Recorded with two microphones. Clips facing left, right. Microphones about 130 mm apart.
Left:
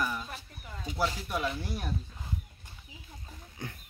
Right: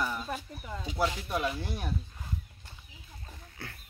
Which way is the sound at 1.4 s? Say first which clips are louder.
Right 1 dB; 5° right (ahead or behind).